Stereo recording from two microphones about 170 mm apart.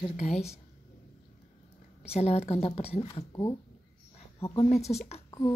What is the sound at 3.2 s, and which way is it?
Speech, 20° left (ahead or behind).